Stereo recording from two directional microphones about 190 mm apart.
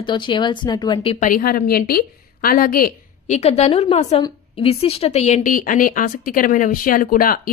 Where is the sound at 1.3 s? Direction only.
50° left (ahead or behind).